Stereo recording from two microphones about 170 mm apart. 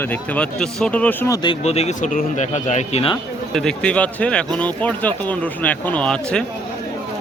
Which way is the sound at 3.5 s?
5° left (ahead or behind).